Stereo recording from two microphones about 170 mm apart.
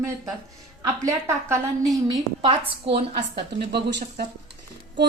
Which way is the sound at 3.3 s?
75° right (ahead or behind).